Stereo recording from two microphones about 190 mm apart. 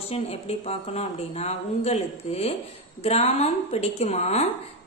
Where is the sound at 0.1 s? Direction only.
30° left (ahead or behind).